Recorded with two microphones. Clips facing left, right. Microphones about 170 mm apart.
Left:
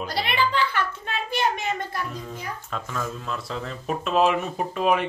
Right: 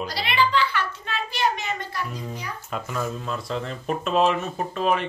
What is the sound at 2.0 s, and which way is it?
A child's voice, 10° right (ahead or behind).